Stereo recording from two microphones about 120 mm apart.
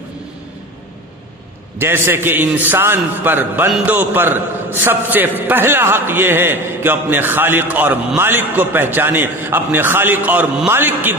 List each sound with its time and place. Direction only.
1.8 s a man's voice: 20° right (ahead or behind)